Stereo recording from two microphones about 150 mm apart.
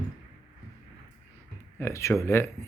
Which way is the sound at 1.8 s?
20° left (ahead or behind).